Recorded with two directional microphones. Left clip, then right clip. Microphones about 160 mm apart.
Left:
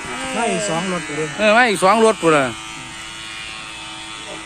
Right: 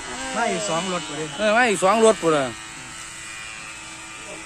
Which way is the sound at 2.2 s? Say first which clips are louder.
Left 5 dB; 10° left (ahead or behind).